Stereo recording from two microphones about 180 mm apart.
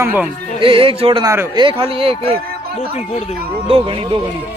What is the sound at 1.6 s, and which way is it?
Speech, 30° right (ahead or behind).